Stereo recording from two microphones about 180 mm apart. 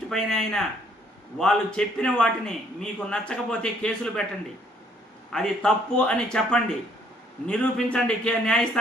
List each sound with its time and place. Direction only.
0.1 s a man's voice: centre (ahead or behind)
5.3 s a man's voice: 5° left (ahead or behind)